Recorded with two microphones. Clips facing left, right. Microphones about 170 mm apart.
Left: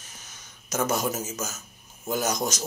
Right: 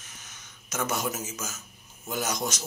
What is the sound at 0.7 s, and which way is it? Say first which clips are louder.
Speech: left 4 dB; 40° left (ahead or behind).